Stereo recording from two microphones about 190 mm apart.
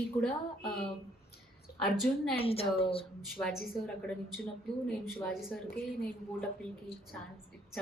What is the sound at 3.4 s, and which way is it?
A woman's voice, centre (ahead or behind).